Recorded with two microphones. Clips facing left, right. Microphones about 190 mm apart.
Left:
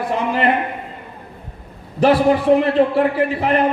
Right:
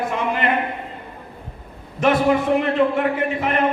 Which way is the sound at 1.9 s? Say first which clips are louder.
Left 3 dB; 35° left (ahead or behind).